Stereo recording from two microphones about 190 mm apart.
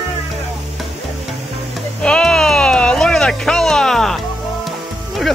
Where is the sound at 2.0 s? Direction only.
5° left (ahead or behind).